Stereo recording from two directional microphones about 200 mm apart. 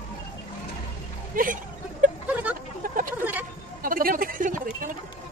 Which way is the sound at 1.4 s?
45° right (ahead or behind).